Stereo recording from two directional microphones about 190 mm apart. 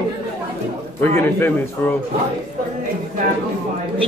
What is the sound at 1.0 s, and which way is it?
Speech, 10° left (ahead or behind).